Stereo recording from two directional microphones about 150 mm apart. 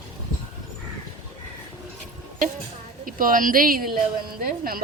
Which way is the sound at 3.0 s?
65° right (ahead or behind).